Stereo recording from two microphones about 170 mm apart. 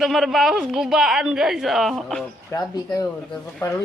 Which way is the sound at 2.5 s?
15° left (ahead or behind).